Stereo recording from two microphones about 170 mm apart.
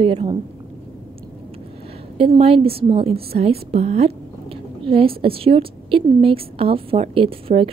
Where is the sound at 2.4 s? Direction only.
35° right (ahead or behind).